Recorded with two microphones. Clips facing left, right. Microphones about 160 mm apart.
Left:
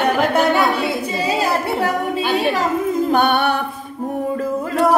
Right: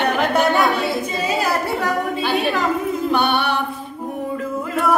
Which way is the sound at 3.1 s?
45° left (ahead or behind).